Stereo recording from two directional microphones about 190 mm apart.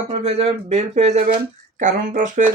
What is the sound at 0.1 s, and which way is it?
Speech, 30° right (ahead or behind).